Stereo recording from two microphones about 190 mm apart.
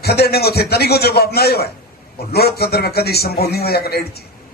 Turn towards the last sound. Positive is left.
turn(degrees=55)  # may be behind; listen again after turning